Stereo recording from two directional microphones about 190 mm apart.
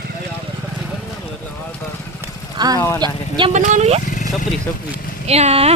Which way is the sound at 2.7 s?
15° left (ahead or behind).